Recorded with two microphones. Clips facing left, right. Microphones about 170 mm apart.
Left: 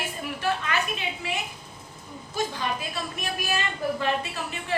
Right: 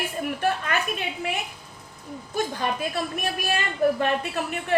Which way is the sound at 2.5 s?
50° right (ahead or behind).